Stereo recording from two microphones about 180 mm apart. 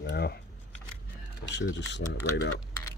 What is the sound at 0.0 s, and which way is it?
Camera, 65° left (ahead or behind).